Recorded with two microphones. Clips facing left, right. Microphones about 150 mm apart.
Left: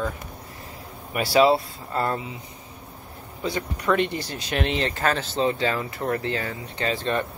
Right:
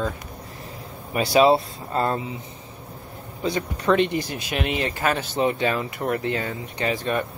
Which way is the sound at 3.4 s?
20° right (ahead or behind).